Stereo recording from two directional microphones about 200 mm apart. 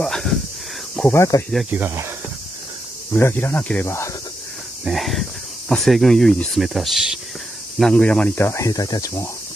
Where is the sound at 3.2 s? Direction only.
10° left (ahead or behind).